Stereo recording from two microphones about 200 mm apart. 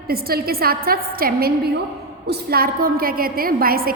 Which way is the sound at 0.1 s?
50° right (ahead or behind).